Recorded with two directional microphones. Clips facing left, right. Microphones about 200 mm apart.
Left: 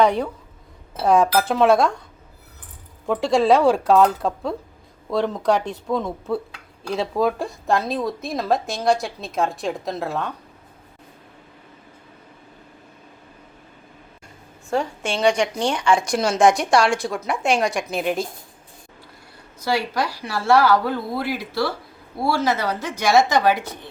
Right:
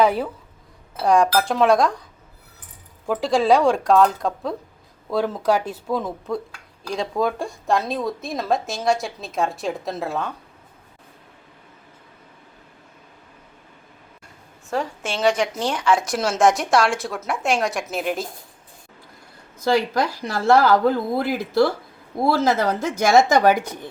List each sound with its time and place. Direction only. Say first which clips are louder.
0.0 s speech: left 1 dB; 5° right (ahead or behind)
3.1 s speech: left 1 dB; centre (ahead or behind)
14.7 s speech: left 2 dB; centre (ahead or behind)
19.7 s speech: right 2 dB; 45° right (ahead or behind)